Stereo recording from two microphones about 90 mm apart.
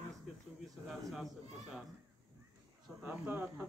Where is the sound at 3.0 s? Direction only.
15° right (ahead or behind).